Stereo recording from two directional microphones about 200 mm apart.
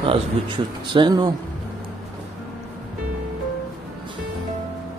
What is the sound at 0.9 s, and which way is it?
Speech, 20° right (ahead or behind).